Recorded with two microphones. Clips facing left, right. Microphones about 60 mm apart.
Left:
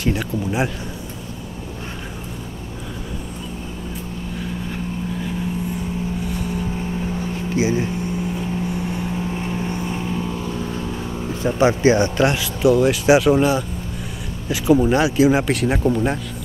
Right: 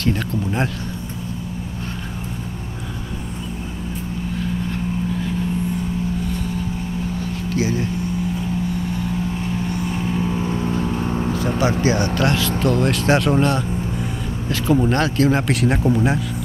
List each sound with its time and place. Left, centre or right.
0.0 s speech: centre
7.4 s speech: left
9.9 s vehicle: centre
10.3 s vehicle: right
11.1 s vehicle: right
11.8 s speech: left; by 16.2 s centre